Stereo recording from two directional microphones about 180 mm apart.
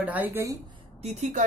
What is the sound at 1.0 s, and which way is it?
Speech, 40° right (ahead or behind).